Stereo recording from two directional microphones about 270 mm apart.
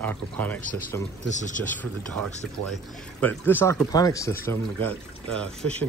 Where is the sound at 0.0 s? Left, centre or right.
Centre.